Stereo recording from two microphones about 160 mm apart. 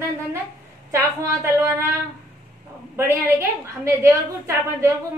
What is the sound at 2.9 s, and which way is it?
A woman's voice, 15° right (ahead or behind).